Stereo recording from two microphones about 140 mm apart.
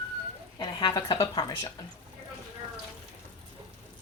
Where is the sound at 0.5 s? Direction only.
30° left (ahead or behind).